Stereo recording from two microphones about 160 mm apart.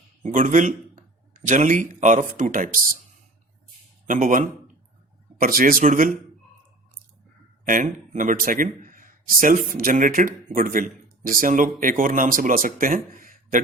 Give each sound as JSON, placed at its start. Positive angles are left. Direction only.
{"t": 0.2, "sound": "speech", "side_deg": -50}
{"t": 4.0, "sound": "a man's voice", "side_deg": -55}
{"t": 7.6, "sound": "a man's voice", "side_deg": -55}